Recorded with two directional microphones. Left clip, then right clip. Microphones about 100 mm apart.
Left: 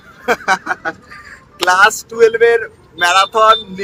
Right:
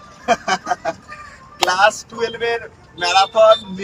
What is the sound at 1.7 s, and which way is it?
Speech, 30° left (ahead or behind).